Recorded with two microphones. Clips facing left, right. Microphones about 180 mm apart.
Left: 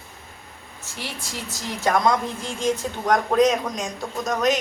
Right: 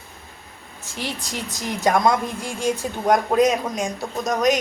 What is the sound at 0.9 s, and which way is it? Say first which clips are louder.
A woman's voice: right 4 dB; 15° right (ahead or behind).